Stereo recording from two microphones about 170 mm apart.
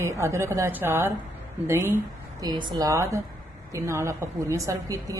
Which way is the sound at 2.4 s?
25° right (ahead or behind).